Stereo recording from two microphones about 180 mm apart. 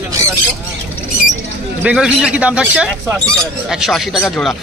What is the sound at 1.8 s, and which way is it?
A man's voice, 5° right (ahead or behind).